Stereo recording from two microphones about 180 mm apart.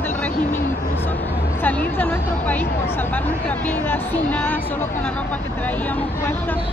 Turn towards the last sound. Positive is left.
turn(degrees=10)  # may be behind; listen again after turning